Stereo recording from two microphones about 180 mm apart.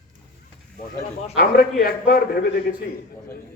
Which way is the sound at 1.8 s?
55° left (ahead or behind).